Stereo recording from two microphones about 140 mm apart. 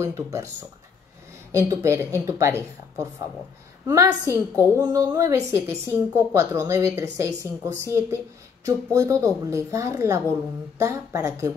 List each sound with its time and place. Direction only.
0.0 s a woman's voice: 20° right (ahead or behind)